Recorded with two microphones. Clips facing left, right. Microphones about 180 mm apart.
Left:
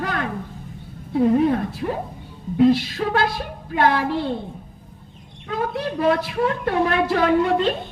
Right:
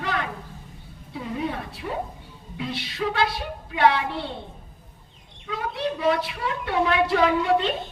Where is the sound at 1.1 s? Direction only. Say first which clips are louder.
Left 12 dB; 50° left (ahead or behind).